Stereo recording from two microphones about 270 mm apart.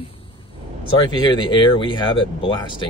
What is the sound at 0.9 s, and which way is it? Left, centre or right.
Speech, centre.